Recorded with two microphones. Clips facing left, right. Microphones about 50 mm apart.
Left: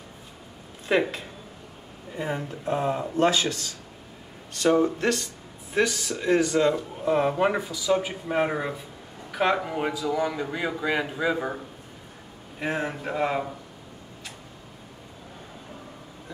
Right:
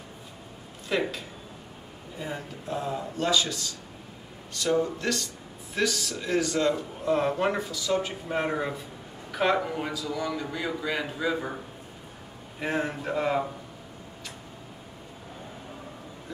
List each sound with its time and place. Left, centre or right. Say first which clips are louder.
0.8 s speech: left 5 dB; left
5.8 s speech: left 3 dB; centre
9.8 s speech: left 5 dB; centre
12.5 s speech: even; centre